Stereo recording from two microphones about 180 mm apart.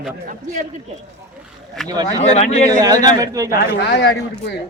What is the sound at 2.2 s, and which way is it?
Speech, 40° left (ahead or behind).